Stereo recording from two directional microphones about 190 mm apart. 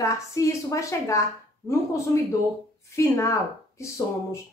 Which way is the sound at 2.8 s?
15° left (ahead or behind).